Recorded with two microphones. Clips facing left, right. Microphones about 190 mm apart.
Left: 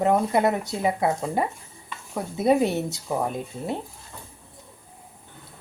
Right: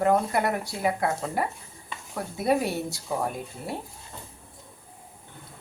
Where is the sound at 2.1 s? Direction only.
20° left (ahead or behind).